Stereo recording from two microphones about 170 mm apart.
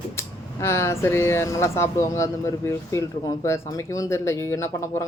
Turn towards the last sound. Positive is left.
turn(degrees=15)  # may be behind; listen again after turning